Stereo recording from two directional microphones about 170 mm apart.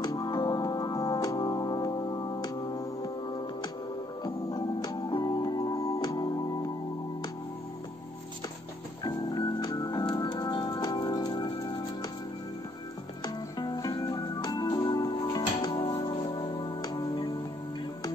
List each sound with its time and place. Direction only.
0.0 s music: 25° left (ahead or behind)
9.0 s organ: 25° left (ahead or behind)
10.1 s music: 25° left (ahead or behind)
13.2 s music: 25° left (ahead or behind)